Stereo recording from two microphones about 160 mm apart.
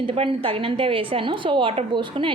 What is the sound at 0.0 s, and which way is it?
A woman's voice, 35° right (ahead or behind).